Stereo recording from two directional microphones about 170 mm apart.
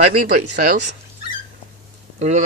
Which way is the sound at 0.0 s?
50° right (ahead or behind).